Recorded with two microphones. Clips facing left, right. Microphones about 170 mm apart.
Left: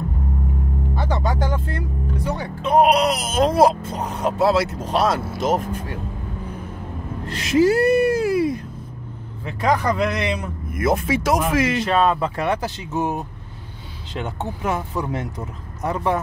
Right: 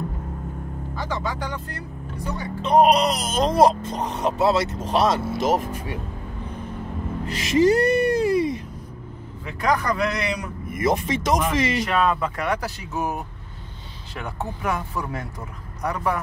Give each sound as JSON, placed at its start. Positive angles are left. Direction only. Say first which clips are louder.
{"t": 0.9, "sound": "speech", "louder": "left 4 dB", "side_deg": 30}
{"t": 2.6, "sound": "speech", "louder": "left 1 dB", "side_deg": 5}
{"t": 7.3, "sound": "speech", "louder": "left 1 dB", "side_deg": 0}
{"t": 9.5, "sound": "speech", "louder": "left 3 dB", "side_deg": 30}
{"t": 10.7, "sound": "speech", "louder": "left 2 dB", "side_deg": 0}
{"t": 11.8, "sound": "speech", "louder": "left 3 dB", "side_deg": 30}